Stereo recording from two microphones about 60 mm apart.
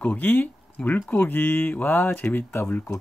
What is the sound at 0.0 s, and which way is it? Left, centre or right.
Speech, left.